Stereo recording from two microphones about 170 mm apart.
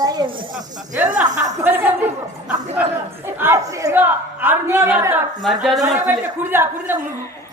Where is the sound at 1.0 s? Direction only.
10° right (ahead or behind).